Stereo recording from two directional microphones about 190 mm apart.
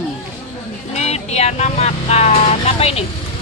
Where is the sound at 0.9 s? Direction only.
35° left (ahead or behind).